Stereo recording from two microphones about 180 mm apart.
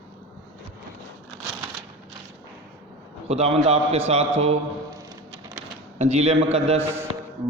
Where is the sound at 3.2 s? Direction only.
35° right (ahead or behind).